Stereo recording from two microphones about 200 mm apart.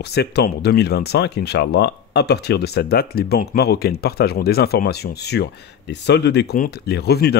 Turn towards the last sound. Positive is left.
turn(degrees=55)  # may be behind; listen again after turning